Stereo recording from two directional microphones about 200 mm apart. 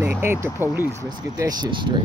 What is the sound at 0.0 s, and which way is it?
Speech, 10° right (ahead or behind).